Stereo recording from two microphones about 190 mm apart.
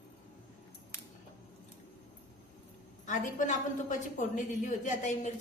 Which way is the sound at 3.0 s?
40° left (ahead or behind).